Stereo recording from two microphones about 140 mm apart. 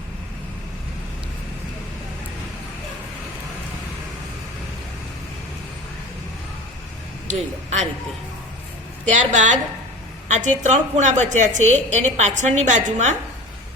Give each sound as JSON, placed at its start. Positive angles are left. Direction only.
{"t": 7.3, "sound": "a woman's voice", "side_deg": -55}
{"t": 9.0, "sound": "a woman's voice", "side_deg": -60}